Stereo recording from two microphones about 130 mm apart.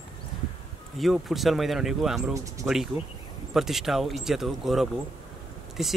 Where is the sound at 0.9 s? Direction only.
Centre (ahead or behind).